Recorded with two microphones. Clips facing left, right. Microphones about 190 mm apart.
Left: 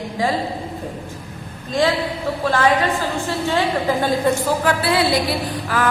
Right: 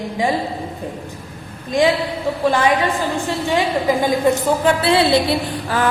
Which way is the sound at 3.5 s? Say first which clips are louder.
Right 2 dB; 15° right (ahead or behind).